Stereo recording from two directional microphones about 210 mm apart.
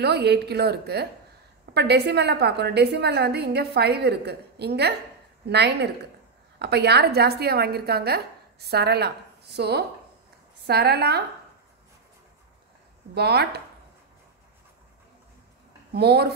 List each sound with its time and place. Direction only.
0.0 s a woman's voice: 50° right (ahead or behind)
13.1 s a woman's voice: 50° right (ahead or behind)
15.9 s a woman's voice: 50° right (ahead or behind)